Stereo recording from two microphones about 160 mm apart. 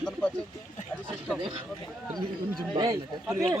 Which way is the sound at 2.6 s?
25° right (ahead or behind).